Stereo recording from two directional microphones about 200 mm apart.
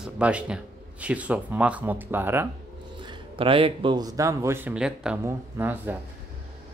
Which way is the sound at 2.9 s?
25° right (ahead or behind).